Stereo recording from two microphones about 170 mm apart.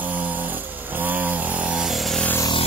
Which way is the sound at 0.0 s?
10° right (ahead or behind).